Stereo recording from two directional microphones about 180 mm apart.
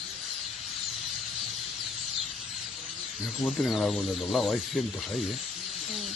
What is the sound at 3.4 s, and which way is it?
Speech, centre (ahead or behind).